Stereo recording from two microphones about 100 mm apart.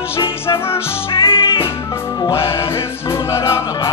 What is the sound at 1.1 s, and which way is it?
Music, 60° left (ahead or behind).